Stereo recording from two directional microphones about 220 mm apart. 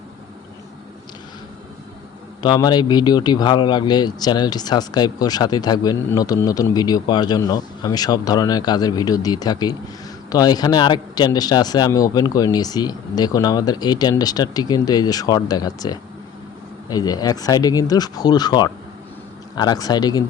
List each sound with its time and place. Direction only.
2.4 s speech: 20° left (ahead or behind)